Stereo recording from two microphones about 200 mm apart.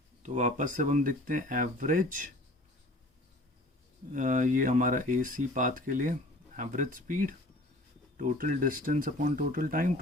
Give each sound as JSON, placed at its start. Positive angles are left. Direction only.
{"t": 0.2, "sound": "speech", "side_deg": -35}
{"t": 4.1, "sound": "speech", "side_deg": -40}